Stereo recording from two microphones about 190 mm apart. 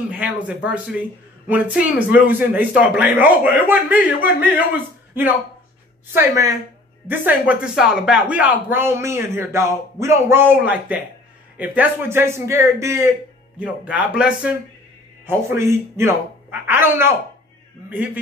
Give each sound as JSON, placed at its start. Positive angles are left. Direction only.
{"t": 0.1, "sound": "speech", "side_deg": -5}
{"t": 6.1, "sound": "speech", "side_deg": -15}